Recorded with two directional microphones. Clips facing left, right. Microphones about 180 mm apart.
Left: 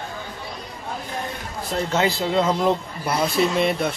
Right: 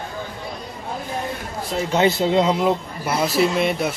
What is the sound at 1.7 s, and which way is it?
Speech, 10° right (ahead or behind).